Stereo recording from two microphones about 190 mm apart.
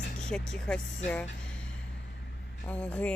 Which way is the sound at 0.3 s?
5° left (ahead or behind).